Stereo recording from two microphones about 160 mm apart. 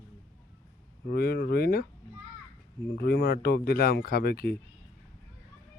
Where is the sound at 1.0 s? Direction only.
75° left (ahead or behind).